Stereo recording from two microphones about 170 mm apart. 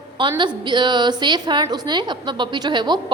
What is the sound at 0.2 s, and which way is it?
A woman's voice, 25° right (ahead or behind).